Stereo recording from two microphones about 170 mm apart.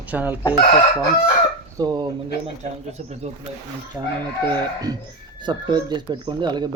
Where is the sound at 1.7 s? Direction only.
25° right (ahead or behind).